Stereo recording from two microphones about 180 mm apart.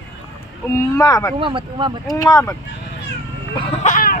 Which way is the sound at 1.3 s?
25° right (ahead or behind).